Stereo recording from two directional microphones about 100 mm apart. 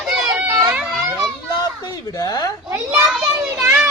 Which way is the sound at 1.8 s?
40° left (ahead or behind).